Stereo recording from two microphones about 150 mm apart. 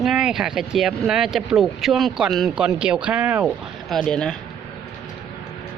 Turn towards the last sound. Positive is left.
turn(degrees=5)  # may be behind; listen again after turning